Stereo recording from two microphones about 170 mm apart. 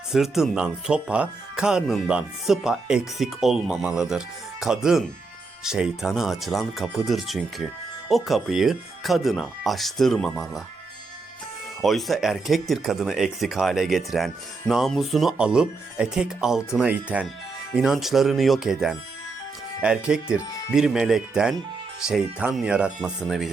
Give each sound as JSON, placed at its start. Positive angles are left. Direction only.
{"t": 0.1, "sound": "speech", "side_deg": 0}
{"t": 11.8, "sound": "speech", "side_deg": 0}